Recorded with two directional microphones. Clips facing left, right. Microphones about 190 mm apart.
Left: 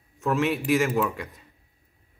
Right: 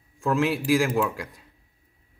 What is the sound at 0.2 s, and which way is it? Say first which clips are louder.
Speech: right 1 dB; centre (ahead or behind).